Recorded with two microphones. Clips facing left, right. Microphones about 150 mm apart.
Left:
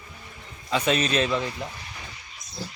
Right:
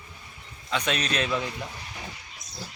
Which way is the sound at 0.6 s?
5° left (ahead or behind).